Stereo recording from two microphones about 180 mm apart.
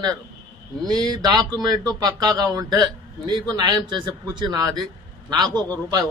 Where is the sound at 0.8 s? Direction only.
20° right (ahead or behind).